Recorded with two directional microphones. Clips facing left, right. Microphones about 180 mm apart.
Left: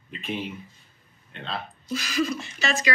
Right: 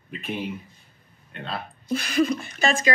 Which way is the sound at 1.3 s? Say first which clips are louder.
Right 1 dB; 10° right (ahead or behind).